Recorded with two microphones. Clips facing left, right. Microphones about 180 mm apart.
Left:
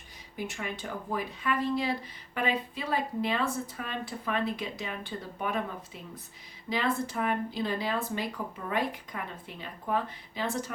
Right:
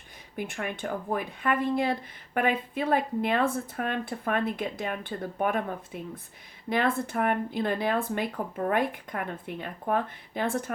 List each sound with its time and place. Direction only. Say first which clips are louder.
0.3 s speech: right 3 dB; 55° right (ahead or behind)